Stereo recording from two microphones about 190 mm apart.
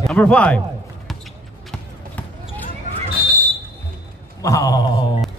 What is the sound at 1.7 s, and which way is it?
Basketball bounce, 10° left (ahead or behind).